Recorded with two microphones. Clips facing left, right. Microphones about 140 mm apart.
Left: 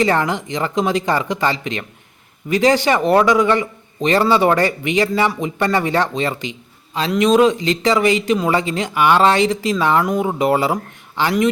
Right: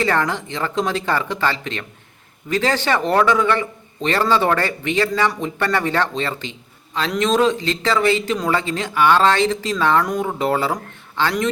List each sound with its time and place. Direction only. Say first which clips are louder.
0.0 s speech: left 3 dB; 15° left (ahead or behind)